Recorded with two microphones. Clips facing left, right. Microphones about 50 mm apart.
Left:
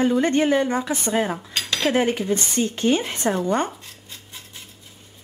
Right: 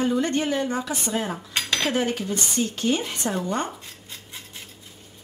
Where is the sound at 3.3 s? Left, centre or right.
Left.